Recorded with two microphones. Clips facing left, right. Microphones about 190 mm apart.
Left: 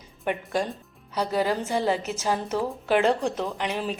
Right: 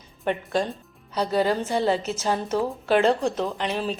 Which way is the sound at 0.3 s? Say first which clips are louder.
Right 2 dB; 10° left (ahead or behind).